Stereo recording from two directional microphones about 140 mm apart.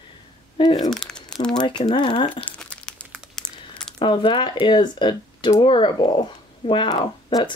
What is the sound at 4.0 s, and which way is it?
Speech, 35° left (ahead or behind).